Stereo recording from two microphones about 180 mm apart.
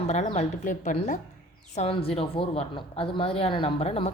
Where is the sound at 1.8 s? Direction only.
30° left (ahead or behind).